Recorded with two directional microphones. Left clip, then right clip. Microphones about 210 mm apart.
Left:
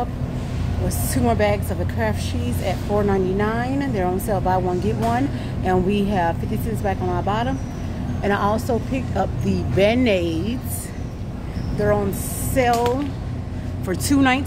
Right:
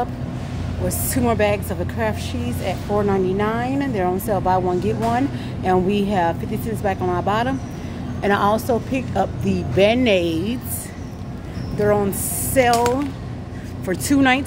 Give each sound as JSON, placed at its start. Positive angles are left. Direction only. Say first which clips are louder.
{"t": 0.8, "sound": "speech", "louder": "right 1 dB", "side_deg": -15}
{"t": 12.5, "sound": "speech", "louder": "right 2 dB", "side_deg": -20}
{"t": 13.8, "sound": "speech", "louder": "right 1 dB", "side_deg": -10}